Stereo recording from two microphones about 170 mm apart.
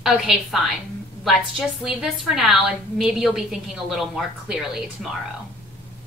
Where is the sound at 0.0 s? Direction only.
Centre (ahead or behind).